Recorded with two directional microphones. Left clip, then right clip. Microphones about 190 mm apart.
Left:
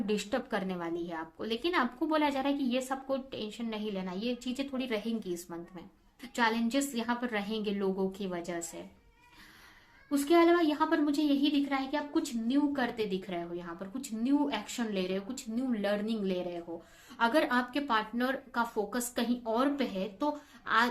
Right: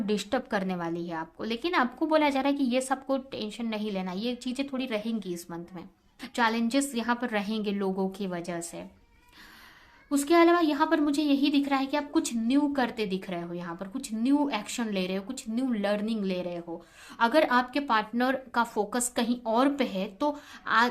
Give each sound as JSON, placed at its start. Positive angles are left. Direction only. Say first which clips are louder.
{"t": 0.0, "sound": "a woman's voice", "louder": "right 3 dB", "side_deg": -25}
{"t": 10.1, "sound": "a woman's voice", "louder": "right 3 dB", "side_deg": -35}